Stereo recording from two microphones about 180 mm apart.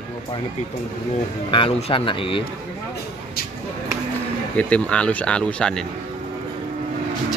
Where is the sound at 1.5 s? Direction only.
30° left (ahead or behind).